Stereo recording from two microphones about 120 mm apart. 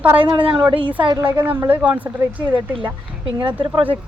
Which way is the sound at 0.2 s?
45° right (ahead or behind).